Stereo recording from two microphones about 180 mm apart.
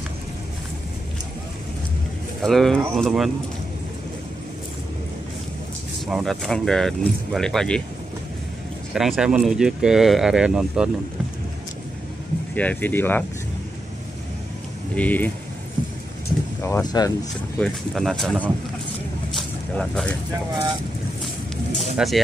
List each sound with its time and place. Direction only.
2.4 s speech: centre (ahead or behind)
6.0 s speech: centre (ahead or behind)
8.9 s speech: centre (ahead or behind)
12.5 s speech: 10° left (ahead or behind)
15.0 s speech: 10° left (ahead or behind)
16.6 s speech: 20° left (ahead or behind)
17.6 s speech: centre (ahead or behind)
19.3 s a sound: 5° left (ahead or behind)
21.9 s speech: centre (ahead or behind)